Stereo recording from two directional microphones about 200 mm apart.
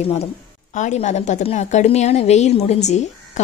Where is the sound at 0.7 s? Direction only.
35° left (ahead or behind).